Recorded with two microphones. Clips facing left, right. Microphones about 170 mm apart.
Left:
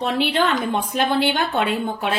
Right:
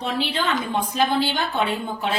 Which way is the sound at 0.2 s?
60° left (ahead or behind).